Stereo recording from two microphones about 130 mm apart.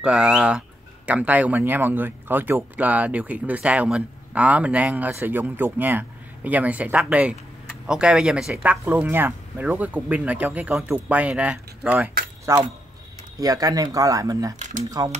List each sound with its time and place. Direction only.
0.0 s speech: 5° right (ahead or behind)
12.5 s speech: 20° right (ahead or behind)